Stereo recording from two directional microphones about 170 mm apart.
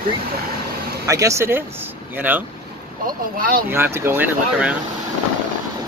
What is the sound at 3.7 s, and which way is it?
Speech, 15° right (ahead or behind).